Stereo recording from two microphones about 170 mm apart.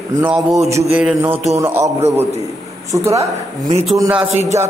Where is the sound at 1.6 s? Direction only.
15° right (ahead or behind).